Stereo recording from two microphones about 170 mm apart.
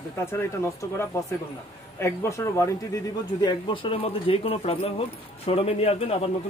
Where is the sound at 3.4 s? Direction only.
30° left (ahead or behind).